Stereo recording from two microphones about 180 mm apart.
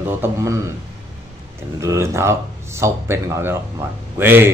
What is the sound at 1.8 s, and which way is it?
Speech, 15° right (ahead or behind).